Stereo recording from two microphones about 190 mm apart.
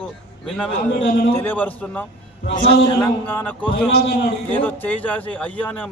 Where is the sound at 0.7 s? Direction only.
30° left (ahead or behind).